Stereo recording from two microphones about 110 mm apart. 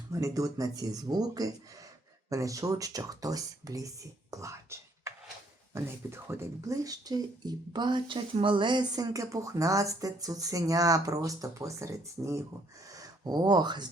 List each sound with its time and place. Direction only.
0.1 s speech: 30° right (ahead or behind)